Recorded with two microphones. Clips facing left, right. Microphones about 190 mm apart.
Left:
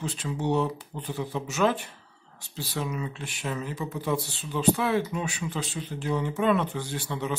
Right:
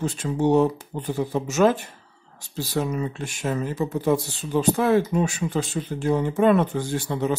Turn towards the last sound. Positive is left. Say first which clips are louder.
# right 7 dB
turn(degrees=-45)  # may be behind; listen again after turning